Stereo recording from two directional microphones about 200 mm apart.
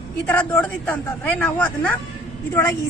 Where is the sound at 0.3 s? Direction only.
10° left (ahead or behind).